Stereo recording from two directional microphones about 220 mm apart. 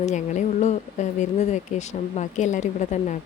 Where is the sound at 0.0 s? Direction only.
30° left (ahead or behind).